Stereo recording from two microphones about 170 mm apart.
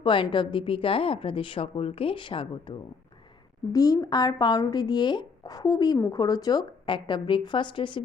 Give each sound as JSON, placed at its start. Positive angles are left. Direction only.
{"t": 0.0, "sound": "a woman's voice", "side_deg": 30}